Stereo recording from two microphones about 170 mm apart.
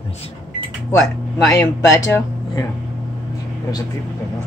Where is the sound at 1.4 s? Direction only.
20° left (ahead or behind).